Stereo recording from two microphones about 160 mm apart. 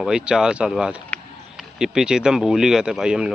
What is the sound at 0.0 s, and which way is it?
Speech, 5° right (ahead or behind).